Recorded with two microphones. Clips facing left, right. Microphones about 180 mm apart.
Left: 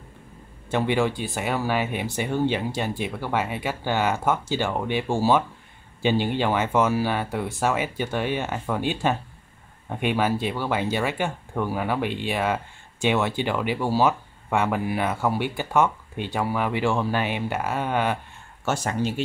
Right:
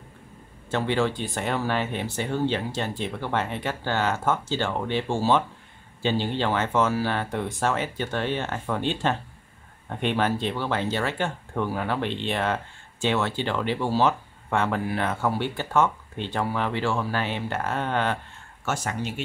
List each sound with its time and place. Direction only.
0.7 s speech: 15° left (ahead or behind)
18.7 s speech: 30° left (ahead or behind)